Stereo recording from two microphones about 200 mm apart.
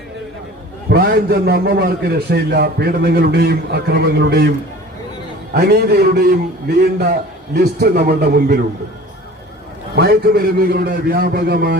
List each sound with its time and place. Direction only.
0.9 s a man's voice: 50° right (ahead or behind)
5.5 s a man's voice: 55° right (ahead or behind)
9.9 s a man's voice: 50° right (ahead or behind)